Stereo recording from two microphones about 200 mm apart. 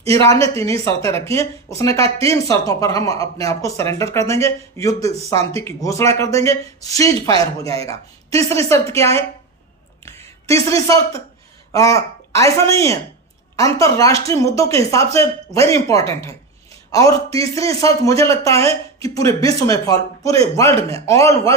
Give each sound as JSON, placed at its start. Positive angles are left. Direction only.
{"t": 0.1, "sound": "speech", "side_deg": 15}
{"t": 2.0, "sound": "speech", "side_deg": -30}
{"t": 2.2, "sound": "speech", "side_deg": 15}
{"t": 5.3, "sound": "speech", "side_deg": -30}
{"t": 5.6, "sound": "a woman's voice", "side_deg": 15}